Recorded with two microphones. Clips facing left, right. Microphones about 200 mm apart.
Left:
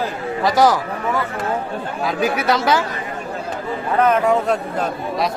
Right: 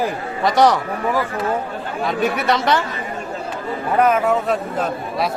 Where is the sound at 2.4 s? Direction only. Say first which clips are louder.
Left 2 dB; centre (ahead or behind).